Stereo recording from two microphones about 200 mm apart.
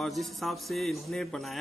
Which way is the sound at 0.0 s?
Centre (ahead or behind).